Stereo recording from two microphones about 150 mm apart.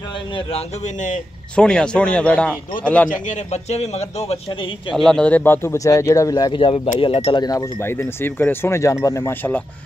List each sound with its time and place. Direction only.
0.5 s a man's voice: 50° left (ahead or behind)
1.5 s speech: 5° left (ahead or behind)
3.1 s a man's voice: 55° left (ahead or behind)
4.9 s speech: 5° left (ahead or behind); by 7.4 s 40° left (ahead or behind)
7.4 s speech: 20° left (ahead or behind)